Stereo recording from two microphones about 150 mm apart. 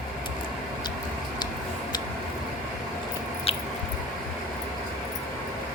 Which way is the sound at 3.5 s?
40° left (ahead or behind).